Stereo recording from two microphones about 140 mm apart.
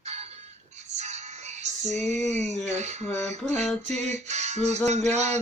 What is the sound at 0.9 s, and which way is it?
Music, 55° right (ahead or behind).